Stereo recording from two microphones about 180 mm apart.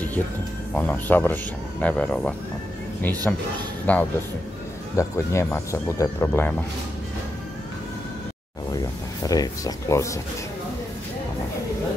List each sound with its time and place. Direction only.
0.7 s a man's voice: 10° left (ahead or behind)
8.7 s speech: 20° left (ahead or behind)